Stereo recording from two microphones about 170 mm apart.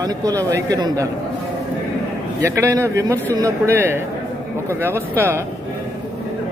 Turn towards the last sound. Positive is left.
turn(degrees=-15)  # may be behind; listen again after turning